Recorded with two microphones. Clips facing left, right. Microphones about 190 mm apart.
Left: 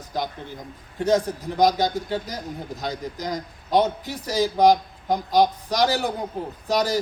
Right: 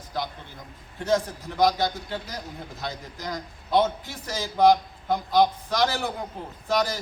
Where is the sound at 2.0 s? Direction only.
40° left (ahead or behind).